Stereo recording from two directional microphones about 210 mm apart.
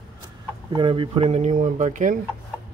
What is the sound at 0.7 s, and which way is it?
Speech, 25° right (ahead or behind).